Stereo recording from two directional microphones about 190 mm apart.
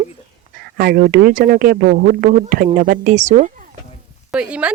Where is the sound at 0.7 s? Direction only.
55° right (ahead or behind); by 3.6 s 40° right (ahead or behind).